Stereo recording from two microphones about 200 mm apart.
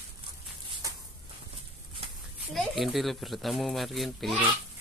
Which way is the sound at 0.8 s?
15° right (ahead or behind).